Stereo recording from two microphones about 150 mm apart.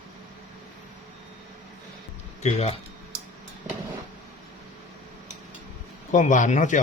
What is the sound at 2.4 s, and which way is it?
Speech, 45° left (ahead or behind).